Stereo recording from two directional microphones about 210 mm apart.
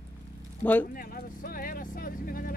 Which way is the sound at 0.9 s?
45° left (ahead or behind).